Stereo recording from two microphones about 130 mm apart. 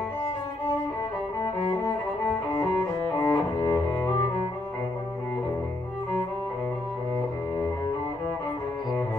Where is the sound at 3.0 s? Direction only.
20° left (ahead or behind).